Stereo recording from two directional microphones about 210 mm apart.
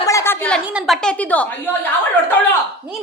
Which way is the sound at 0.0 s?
15° left (ahead or behind).